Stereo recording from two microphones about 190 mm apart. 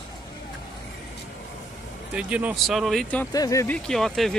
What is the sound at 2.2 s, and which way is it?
Speech, 5° right (ahead or behind).